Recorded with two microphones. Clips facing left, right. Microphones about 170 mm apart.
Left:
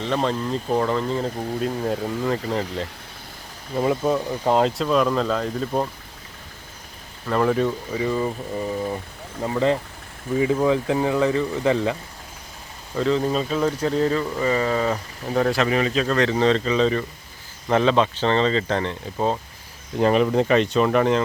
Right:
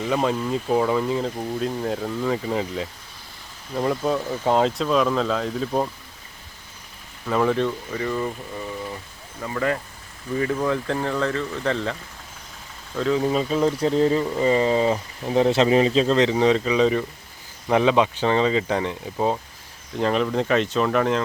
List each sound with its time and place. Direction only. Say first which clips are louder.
0.0 s speech: right 1 dB; 5° right (ahead or behind)
7.3 s speech: left 1 dB; centre (ahead or behind)
8.5 s speech: left 6 dB; 30° left (ahead or behind)
10.3 s speech: left 4 dB; 10° left (ahead or behind)
13.0 s speech: even; 5° right (ahead or behind)
20.0 s speech: left 4 dB; 5° left (ahead or behind)